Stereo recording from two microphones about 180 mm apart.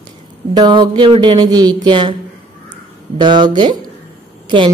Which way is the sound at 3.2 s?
25° right (ahead or behind).